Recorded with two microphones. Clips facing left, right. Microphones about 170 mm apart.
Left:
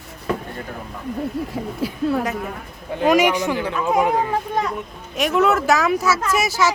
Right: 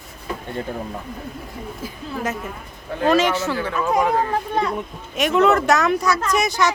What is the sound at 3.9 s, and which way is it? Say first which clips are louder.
Speech: left 1 dB; 5° left (ahead or behind).